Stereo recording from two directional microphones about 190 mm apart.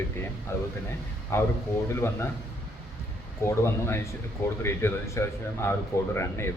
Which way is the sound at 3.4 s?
15° left (ahead or behind).